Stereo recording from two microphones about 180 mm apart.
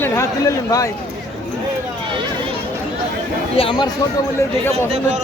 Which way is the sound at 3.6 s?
25° left (ahead or behind).